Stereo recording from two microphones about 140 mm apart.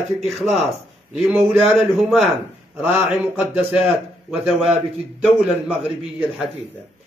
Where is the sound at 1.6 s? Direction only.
Centre (ahead or behind).